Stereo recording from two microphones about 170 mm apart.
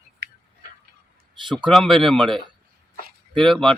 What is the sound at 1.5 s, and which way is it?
Speech, centre (ahead or behind).